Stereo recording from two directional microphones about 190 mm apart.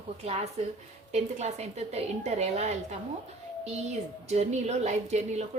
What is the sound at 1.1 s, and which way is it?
A woman's voice, 35° right (ahead or behind).